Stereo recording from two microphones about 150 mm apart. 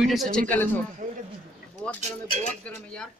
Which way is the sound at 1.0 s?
60° right (ahead or behind).